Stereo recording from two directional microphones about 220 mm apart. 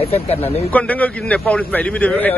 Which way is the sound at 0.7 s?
5° left (ahead or behind).